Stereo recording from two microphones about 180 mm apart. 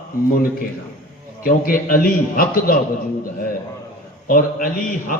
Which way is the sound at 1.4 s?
50° left (ahead or behind).